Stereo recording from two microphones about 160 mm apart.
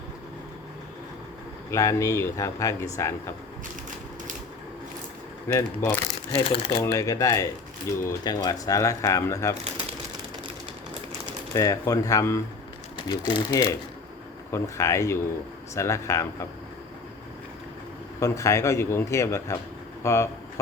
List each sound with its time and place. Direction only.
1.7 s speech: 20° left (ahead or behind)
5.5 s speech: 15° left (ahead or behind)
6.4 s speech: 35° left (ahead or behind)
6.7 s speech: 20° left (ahead or behind)
11.5 s speech: 20° left (ahead or behind)
18.2 s speech: 20° left (ahead or behind)